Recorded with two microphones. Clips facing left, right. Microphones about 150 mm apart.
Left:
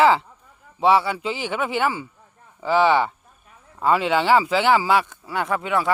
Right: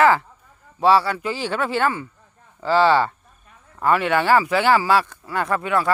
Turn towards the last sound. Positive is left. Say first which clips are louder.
# right 1 dB
turn(degrees=15)  # may be behind; listen again after turning